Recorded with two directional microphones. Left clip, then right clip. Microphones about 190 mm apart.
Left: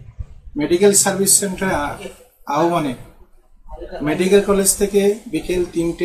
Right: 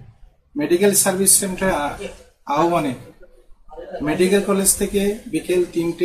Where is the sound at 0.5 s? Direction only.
20° left (ahead or behind).